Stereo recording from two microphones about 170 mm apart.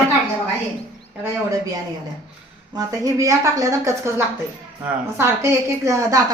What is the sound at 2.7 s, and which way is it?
Speech, 20° right (ahead or behind).